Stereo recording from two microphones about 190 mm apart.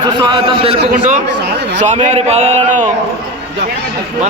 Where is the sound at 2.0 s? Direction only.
35° right (ahead or behind).